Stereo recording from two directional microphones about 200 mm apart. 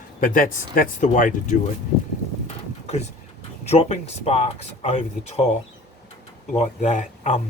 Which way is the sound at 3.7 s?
30° left (ahead or behind).